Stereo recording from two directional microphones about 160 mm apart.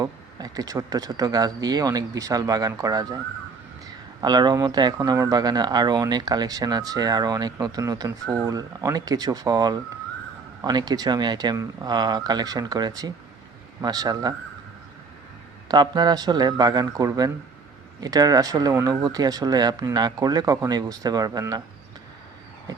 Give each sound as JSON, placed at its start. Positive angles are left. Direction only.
{"t": 0.0, "sound": "speech", "side_deg": -25}
{"t": 4.2, "sound": "speech", "side_deg": -25}
{"t": 15.7, "sound": "speech", "side_deg": -25}